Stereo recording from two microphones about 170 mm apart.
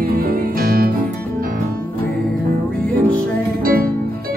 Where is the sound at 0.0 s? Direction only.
55° right (ahead or behind).